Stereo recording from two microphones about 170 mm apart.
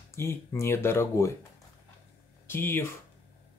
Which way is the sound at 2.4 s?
15° left (ahead or behind).